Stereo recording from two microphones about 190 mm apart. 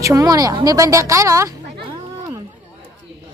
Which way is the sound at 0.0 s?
20° right (ahead or behind).